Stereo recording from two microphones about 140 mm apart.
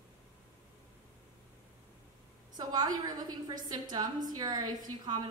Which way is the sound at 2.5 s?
30° right (ahead or behind).